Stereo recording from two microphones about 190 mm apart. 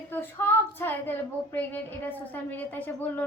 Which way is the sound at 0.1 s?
10° left (ahead or behind).